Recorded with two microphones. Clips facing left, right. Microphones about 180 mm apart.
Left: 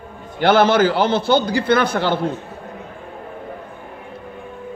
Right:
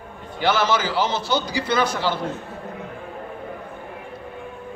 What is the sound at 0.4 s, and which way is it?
A man's voice, 55° left (ahead or behind).